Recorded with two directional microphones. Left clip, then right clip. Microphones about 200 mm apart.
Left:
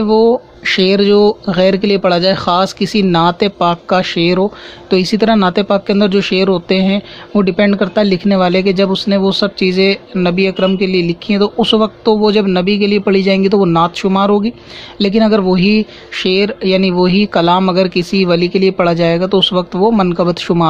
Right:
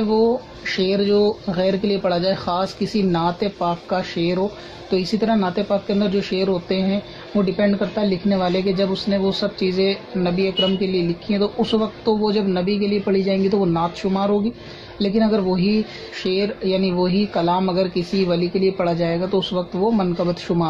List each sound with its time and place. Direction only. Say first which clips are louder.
0.1 s speech: left 9 dB; 35° left (ahead or behind)